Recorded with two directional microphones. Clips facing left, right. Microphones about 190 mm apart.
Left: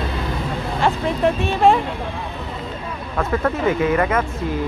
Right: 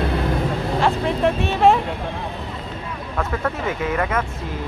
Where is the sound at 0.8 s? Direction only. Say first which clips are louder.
Left 1 dB; centre (ahead or behind).